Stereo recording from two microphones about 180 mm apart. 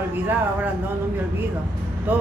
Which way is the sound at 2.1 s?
10° right (ahead or behind).